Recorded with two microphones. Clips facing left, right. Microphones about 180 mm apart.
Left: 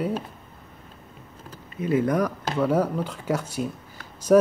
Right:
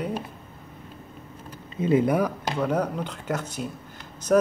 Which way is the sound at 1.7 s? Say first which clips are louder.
Right 2 dB; 20° right (ahead or behind).